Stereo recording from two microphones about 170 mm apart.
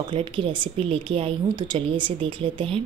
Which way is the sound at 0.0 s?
30° right (ahead or behind).